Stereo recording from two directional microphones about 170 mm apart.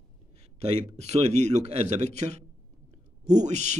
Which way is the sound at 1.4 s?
40° right (ahead or behind).